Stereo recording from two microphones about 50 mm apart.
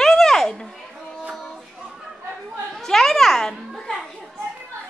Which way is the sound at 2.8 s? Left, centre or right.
Centre.